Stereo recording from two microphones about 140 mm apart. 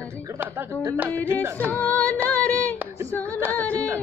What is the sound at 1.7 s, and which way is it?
Music, 10° left (ahead or behind).